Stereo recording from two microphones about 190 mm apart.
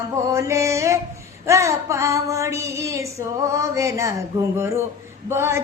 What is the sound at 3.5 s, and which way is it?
Speech, 15° right (ahead or behind).